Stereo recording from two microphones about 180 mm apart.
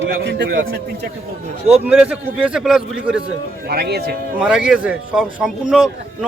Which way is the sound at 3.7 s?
65° right (ahead or behind).